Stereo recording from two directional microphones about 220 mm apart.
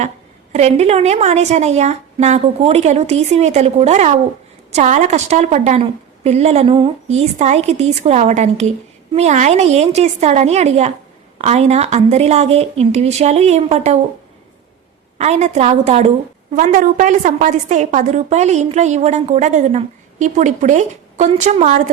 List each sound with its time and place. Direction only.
0.5 s a woman's voice: 30° right (ahead or behind)
15.2 s a woman's voice: 30° right (ahead or behind)